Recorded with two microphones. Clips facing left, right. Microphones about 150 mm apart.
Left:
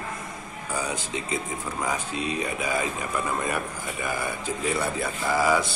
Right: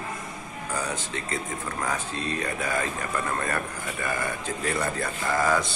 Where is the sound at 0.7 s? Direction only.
10° left (ahead or behind).